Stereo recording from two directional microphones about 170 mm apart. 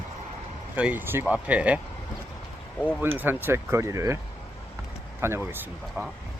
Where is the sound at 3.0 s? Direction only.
10° right (ahead or behind).